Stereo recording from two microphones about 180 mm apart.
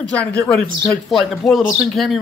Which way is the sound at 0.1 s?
5° left (ahead or behind).